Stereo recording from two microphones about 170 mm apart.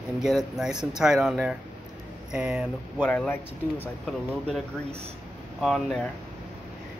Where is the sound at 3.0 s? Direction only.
5° left (ahead or behind).